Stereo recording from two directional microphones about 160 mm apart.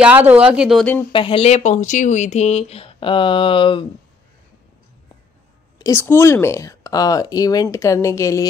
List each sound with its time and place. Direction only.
0.0 s speech: 10° right (ahead or behind)
1.1 s speech: 35° left (ahead or behind)
1.5 s speech: 50° left (ahead or behind); by 3.8 s 30° left (ahead or behind)
5.8 s speech: 15° left (ahead or behind)